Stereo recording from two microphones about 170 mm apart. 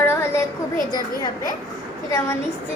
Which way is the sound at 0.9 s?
25° left (ahead or behind).